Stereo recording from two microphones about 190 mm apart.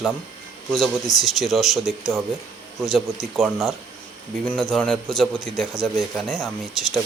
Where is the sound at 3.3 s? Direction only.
Centre (ahead or behind).